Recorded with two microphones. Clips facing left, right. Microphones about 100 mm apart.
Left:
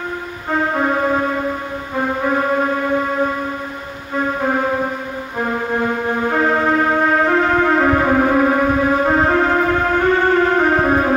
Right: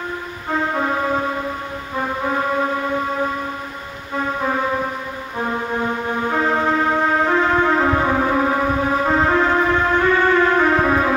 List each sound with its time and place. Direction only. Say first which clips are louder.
0.5 s music: left 3 dB; 40° left (ahead or behind)
4.2 s music: left 3 dB; 45° left (ahead or behind)